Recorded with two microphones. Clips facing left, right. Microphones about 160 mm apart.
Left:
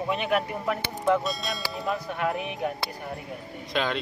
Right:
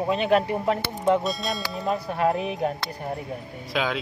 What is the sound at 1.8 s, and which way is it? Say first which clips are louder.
Speech: right 5 dB; 30° right (ahead or behind).